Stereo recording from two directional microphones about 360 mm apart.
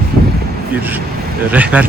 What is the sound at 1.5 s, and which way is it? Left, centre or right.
Speech, centre.